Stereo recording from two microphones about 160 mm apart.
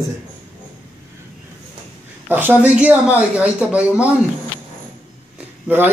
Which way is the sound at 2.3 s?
10° right (ahead or behind).